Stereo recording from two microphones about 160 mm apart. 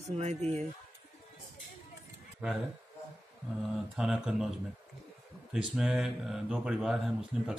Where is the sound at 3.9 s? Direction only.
5° right (ahead or behind).